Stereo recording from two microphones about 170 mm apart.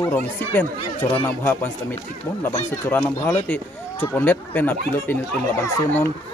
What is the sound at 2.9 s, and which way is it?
Speech, 5° left (ahead or behind).